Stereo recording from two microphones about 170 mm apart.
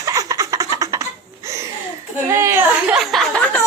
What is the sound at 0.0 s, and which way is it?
Laughter, 20° right (ahead or behind).